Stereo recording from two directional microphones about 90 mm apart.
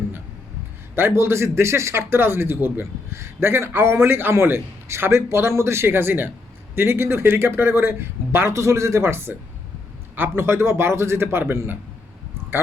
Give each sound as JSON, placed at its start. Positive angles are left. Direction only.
{"t": 0.9, "sound": "speech", "side_deg": -25}